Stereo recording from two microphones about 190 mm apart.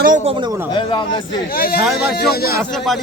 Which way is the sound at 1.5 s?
50° left (ahead or behind).